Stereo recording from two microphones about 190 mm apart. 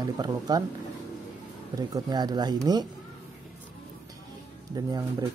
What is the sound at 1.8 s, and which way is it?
Speech, 20° right (ahead or behind).